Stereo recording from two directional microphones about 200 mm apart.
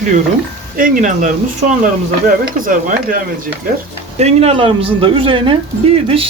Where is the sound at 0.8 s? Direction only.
40° right (ahead or behind).